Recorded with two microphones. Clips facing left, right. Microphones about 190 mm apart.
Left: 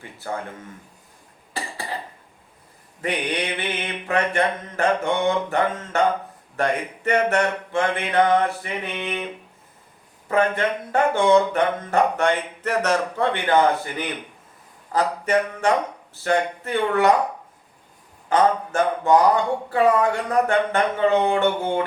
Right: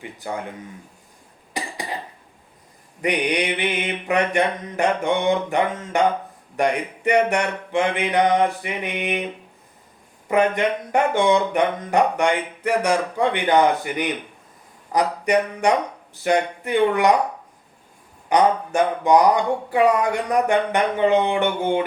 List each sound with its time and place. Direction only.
0.0 s speech: 15° right (ahead or behind)
1.5 s cough: 15° right (ahead or behind)
3.0 s speech: 15° right (ahead or behind)
10.2 s speech: 15° right (ahead or behind)
18.3 s speech: 15° right (ahead or behind)